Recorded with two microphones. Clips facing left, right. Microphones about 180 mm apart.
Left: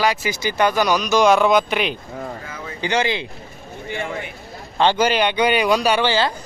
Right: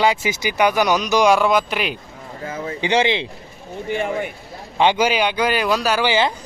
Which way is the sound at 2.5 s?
25° right (ahead or behind).